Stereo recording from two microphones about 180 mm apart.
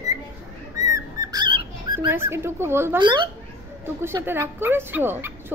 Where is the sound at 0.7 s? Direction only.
20° right (ahead or behind).